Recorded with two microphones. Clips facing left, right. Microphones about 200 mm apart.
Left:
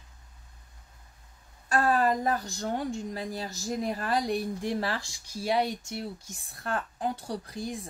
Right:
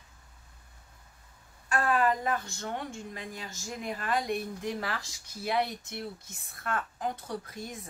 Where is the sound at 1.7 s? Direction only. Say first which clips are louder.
Left 2 dB; 35° left (ahead or behind).